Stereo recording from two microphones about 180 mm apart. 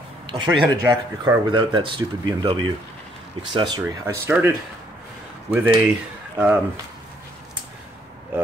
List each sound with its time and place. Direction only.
0.3 s speech: 25° right (ahead or behind)
4.0 s speech: 15° right (ahead or behind)